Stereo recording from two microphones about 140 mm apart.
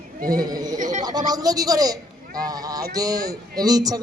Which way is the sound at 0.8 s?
65° right (ahead or behind).